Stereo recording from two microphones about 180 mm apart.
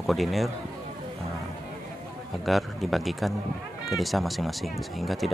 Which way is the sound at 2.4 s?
Centre (ahead or behind).